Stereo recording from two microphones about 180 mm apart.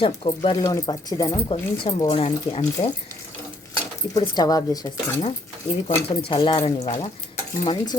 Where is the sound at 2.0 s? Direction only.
35° left (ahead or behind).